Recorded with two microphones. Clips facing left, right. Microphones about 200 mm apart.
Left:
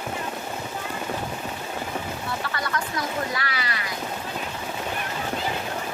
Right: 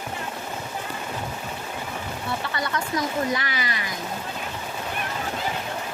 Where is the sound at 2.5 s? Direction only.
20° right (ahead or behind).